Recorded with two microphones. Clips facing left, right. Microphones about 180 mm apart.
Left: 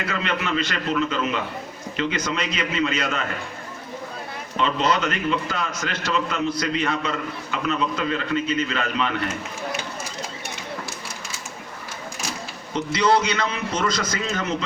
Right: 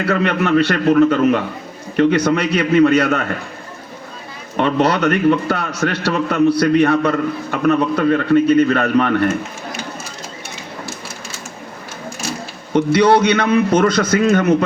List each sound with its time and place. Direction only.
0.0 s a man's voice: 55° right (ahead or behind)
4.5 s a man's voice: 60° right (ahead or behind)
12.7 s a man's voice: 60° right (ahead or behind)